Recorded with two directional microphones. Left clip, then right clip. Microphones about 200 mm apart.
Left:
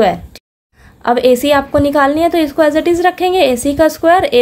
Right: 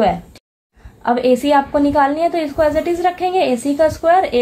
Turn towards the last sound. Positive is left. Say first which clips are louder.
# left 3 dB
turn(degrees=45)  # may be behind; listen again after turning